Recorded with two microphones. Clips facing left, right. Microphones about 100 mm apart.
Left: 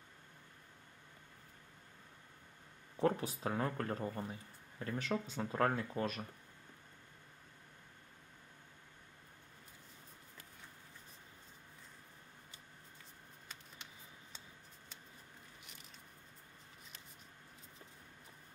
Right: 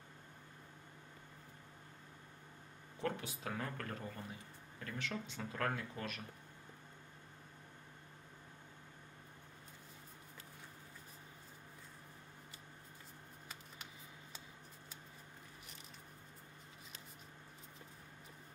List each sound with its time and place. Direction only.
3.0 s speech: 35° left (ahead or behind)